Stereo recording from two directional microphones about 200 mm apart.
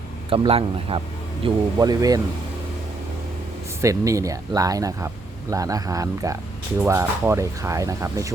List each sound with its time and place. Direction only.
0.3 s speech: 30° right (ahead or behind)
3.8 s speech: 15° right (ahead or behind)